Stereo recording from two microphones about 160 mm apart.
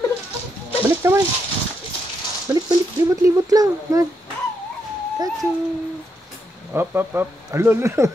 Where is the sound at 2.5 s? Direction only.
15° right (ahead or behind).